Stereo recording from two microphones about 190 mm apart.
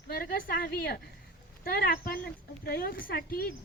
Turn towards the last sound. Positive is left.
turn(degrees=50)  # may be behind; listen again after turning